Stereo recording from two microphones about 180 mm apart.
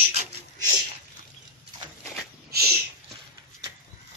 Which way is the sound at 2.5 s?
60° right (ahead or behind).